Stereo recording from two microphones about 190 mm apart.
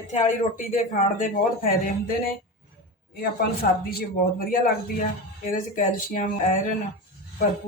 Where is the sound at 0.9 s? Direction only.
40° left (ahead or behind).